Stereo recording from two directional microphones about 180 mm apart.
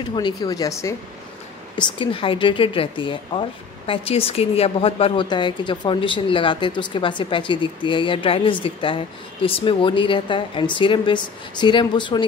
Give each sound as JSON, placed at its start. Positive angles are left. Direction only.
{"t": 0.1, "sound": "a woman's voice", "side_deg": 25}
{"t": 1.8, "sound": "a woman's voice", "side_deg": 30}